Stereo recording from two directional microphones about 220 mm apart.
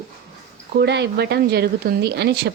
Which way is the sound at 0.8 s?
50° right (ahead or behind).